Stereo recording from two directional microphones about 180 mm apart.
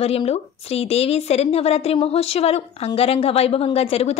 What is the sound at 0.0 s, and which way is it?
A woman's voice, 35° left (ahead or behind).